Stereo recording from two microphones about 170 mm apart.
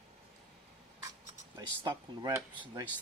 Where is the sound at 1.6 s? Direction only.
25° right (ahead or behind).